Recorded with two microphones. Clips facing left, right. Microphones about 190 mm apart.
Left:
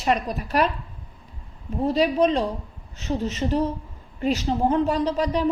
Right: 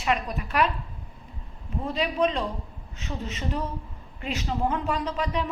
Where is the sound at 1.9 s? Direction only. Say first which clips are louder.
Left 6 dB; 40° left (ahead or behind).